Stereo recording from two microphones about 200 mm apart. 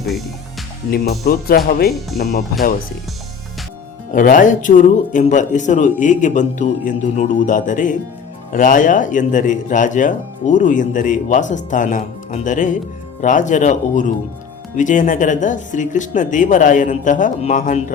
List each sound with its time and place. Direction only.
0.9 s speech: 50° left (ahead or behind)
4.1 s speech: 40° left (ahead or behind)